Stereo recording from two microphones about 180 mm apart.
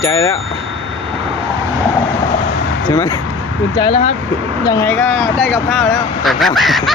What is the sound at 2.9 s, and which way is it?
Speech, 20° left (ahead or behind).